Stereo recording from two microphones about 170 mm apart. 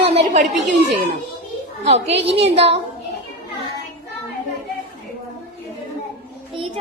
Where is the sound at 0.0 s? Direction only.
35° right (ahead or behind).